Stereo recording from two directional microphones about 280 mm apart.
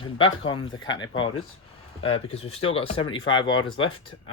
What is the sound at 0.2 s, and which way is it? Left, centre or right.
Speech, centre.